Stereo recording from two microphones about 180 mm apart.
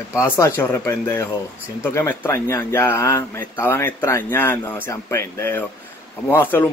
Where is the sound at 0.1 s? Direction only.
15° left (ahead or behind).